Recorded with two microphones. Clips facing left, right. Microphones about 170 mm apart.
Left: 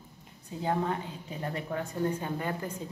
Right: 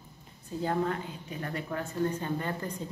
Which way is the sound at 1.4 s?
20° left (ahead or behind).